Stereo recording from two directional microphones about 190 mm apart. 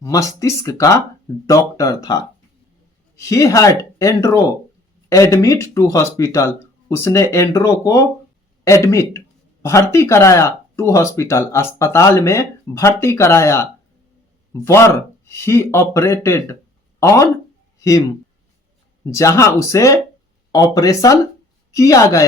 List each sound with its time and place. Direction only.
0.0 s speech: 15° left (ahead or behind)
19.1 s speech: 15° left (ahead or behind)